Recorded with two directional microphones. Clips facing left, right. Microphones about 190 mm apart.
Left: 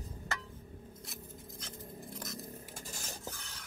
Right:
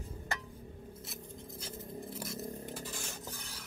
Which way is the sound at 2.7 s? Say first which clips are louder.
Right 4 dB; 45° left (ahead or behind).